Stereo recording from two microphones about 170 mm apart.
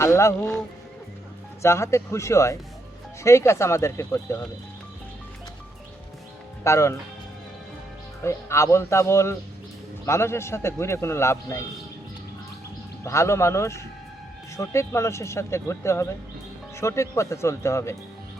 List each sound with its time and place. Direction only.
0.0 s speech: 15° left (ahead or behind)
1.6 s speech: 15° left (ahead or behind)
6.7 s speech: 15° left (ahead or behind)
8.2 s speech: 15° left (ahead or behind)
13.1 s speech: 15° left (ahead or behind)